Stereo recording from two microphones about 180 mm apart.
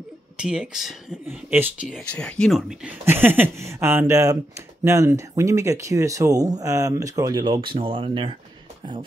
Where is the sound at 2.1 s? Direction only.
5° left (ahead or behind).